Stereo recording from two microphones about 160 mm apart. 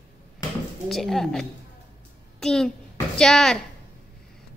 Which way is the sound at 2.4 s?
5° left (ahead or behind).